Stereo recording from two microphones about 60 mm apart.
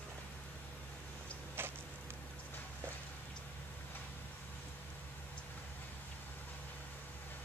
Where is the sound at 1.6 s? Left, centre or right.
Right.